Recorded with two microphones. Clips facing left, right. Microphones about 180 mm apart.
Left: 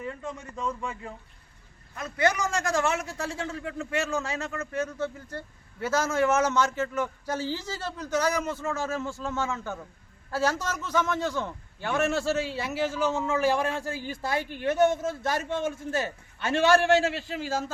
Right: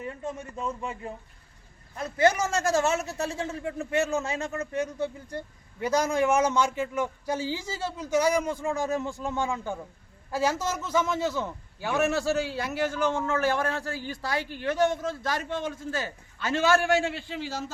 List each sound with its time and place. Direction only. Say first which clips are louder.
0.0 s a man's voice: right 1 dB; 20° right (ahead or behind); by 16.8 s 25° left (ahead or behind)
17.2 s a man's voice: left 3 dB; 45° left (ahead or behind)